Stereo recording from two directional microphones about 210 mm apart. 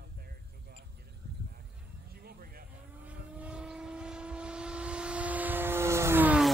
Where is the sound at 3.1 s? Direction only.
5° right (ahead or behind).